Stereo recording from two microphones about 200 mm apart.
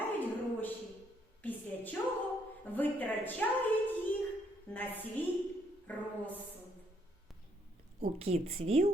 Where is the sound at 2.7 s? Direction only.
10° left (ahead or behind).